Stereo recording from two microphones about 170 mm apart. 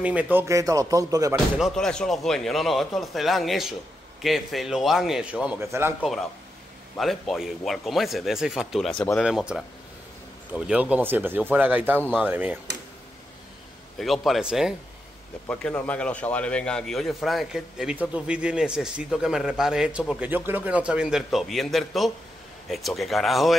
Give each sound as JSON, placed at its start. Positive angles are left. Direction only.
{"t": 0.0, "sound": "speech", "side_deg": -10}
{"t": 1.6, "sound": "a man's voice", "side_deg": 5}
{"t": 7.0, "sound": "a man's voice", "side_deg": 0}
{"t": 9.2, "sound": "a man's voice", "side_deg": -5}
{"t": 13.9, "sound": "a man's voice", "side_deg": 0}
{"t": 15.4, "sound": "a man's voice", "side_deg": 10}